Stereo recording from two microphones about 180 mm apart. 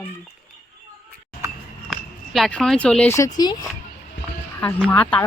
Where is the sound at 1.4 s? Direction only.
15° right (ahead or behind).